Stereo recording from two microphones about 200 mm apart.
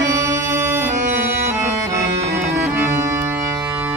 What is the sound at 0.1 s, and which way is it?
Music, 15° right (ahead or behind).